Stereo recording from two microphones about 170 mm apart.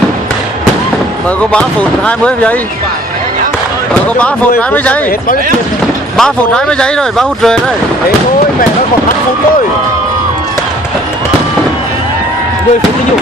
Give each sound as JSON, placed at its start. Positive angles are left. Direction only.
{"t": 1.4, "sound": "speech", "side_deg": 5}
{"t": 6.1, "sound": "speech", "side_deg": 5}